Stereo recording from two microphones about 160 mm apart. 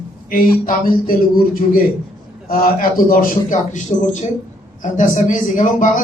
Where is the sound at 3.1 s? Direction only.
60° left (ahead or behind).